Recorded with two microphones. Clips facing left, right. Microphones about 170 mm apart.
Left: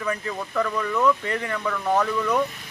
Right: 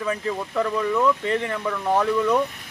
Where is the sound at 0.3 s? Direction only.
10° right (ahead or behind).